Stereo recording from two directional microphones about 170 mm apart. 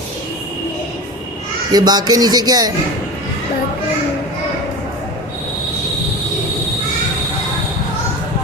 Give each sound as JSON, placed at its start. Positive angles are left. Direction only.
{"t": 1.7, "sound": "speech", "side_deg": -25}